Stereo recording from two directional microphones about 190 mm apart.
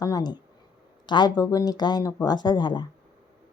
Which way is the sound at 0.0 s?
20° left (ahead or behind).